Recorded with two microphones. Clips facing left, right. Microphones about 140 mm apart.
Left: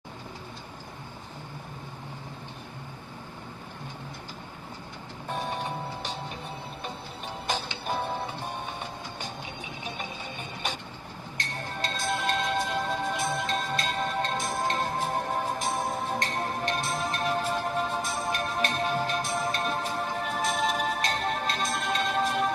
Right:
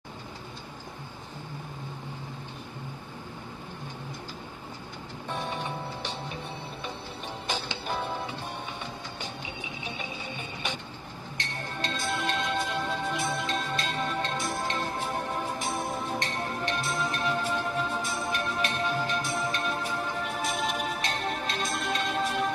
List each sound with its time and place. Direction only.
5.3 s music: 40° left (ahead or behind)
11.3 s music: 40° left (ahead or behind)